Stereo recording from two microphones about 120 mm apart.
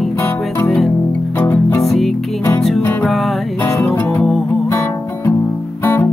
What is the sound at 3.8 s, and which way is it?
Music, 10° left (ahead or behind).